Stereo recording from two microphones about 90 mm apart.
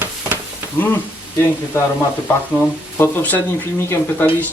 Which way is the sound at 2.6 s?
20° left (ahead or behind).